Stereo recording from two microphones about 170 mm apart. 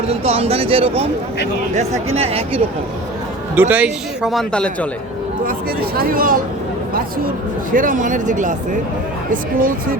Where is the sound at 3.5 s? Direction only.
10° right (ahead or behind); by 4.9 s 5° left (ahead or behind).